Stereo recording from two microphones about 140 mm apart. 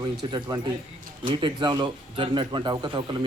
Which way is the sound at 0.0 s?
30° right (ahead or behind).